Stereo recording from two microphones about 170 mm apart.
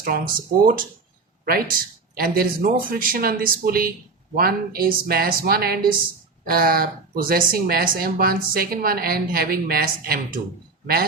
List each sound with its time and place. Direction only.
0.0 s speech: 60° right (ahead or behind)